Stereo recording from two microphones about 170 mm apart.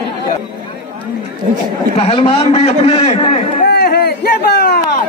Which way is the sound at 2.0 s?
35° left (ahead or behind).